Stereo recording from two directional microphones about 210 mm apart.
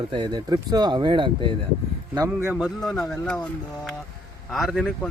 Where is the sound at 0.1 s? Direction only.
20° right (ahead or behind).